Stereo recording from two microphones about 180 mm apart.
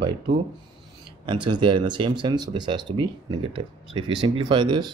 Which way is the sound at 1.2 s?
25° right (ahead or behind).